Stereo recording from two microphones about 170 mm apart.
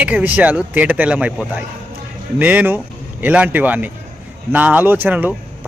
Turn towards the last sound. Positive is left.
turn(degrees=-10)  # may be behind; listen again after turning